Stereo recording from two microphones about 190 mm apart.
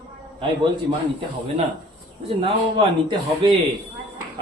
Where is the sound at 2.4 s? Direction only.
30° right (ahead or behind).